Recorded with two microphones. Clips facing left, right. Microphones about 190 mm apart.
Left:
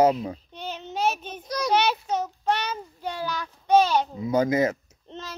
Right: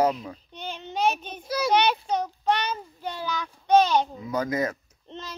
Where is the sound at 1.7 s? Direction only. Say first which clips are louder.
Even; 5° left (ahead or behind).